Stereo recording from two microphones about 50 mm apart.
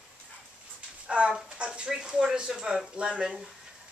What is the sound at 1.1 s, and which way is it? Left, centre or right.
A woman's voice, right.